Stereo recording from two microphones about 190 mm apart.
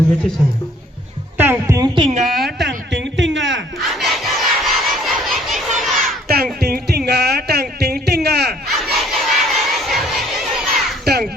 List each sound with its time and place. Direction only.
1.4 s speech: 15° right (ahead or behind)
2.0 s speech: 30° right (ahead or behind)
2.2 s a sound: centre (ahead or behind)
2.6 s a sound: 70° right (ahead or behind)
3.8 s crowd: centre (ahead or behind)
6.2 s music: 55° right (ahead or behind)
8.7 s crowd: centre (ahead or behind)
11.0 s crow: 55° right (ahead or behind)